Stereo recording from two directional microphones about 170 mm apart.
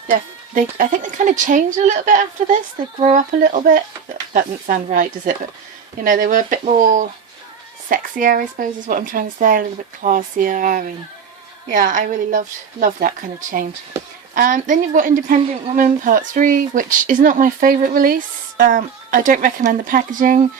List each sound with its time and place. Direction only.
0.1 s speech: 50° right (ahead or behind)